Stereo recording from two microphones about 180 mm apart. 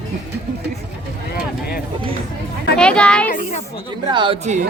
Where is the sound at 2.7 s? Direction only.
5° left (ahead or behind).